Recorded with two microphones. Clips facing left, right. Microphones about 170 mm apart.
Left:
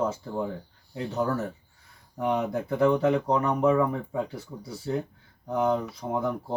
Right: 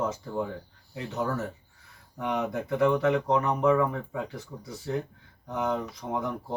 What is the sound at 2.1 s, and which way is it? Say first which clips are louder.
Speech: left 3 dB; 30° left (ahead or behind).